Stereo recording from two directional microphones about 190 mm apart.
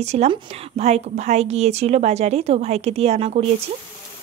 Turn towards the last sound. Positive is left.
turn(degrees=-35)  # may be behind; listen again after turning